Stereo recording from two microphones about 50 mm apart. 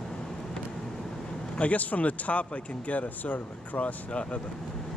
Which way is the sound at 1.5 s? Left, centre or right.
Left.